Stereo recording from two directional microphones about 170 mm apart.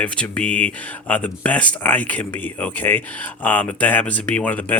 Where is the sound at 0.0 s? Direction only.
5° left (ahead or behind).